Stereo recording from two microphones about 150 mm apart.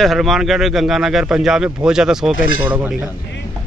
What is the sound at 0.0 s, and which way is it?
Speech, centre (ahead or behind).